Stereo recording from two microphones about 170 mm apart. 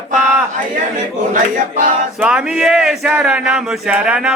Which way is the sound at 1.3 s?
50° right (ahead or behind).